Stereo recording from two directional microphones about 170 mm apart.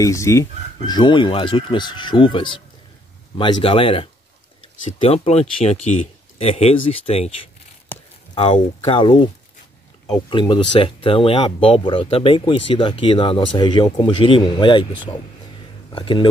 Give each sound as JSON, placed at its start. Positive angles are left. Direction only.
{"t": 0.0, "sound": "speech", "side_deg": 20}
{"t": 7.9, "sound": "a sound", "side_deg": 10}
{"t": 10.3, "sound": "speech", "side_deg": 30}
{"t": 15.9, "sound": "speech", "side_deg": 30}